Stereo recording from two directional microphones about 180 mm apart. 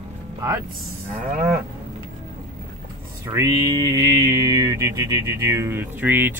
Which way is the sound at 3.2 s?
15° right (ahead or behind).